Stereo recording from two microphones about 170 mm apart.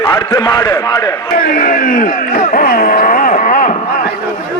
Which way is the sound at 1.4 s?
60° left (ahead or behind).